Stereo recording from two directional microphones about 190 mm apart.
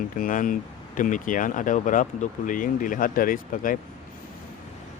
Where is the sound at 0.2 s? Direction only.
45° left (ahead or behind).